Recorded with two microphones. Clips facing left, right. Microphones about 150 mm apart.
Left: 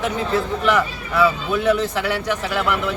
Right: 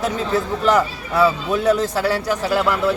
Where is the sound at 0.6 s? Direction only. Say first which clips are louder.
Right 2 dB; 40° right (ahead or behind).